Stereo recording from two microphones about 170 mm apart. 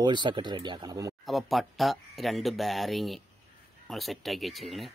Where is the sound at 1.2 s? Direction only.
Centre (ahead or behind).